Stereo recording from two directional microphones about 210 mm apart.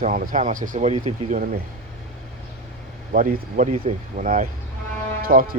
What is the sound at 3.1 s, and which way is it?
Speech, 40° right (ahead or behind).